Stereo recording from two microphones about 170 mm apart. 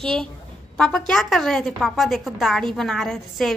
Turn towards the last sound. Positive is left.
turn(degrees=0)  # may be behind; listen again after turning